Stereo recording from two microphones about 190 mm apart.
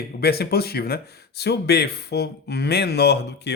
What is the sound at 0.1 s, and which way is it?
Speech, 55° left (ahead or behind).